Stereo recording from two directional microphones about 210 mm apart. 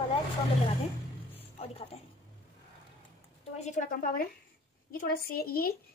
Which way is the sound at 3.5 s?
35° left (ahead or behind).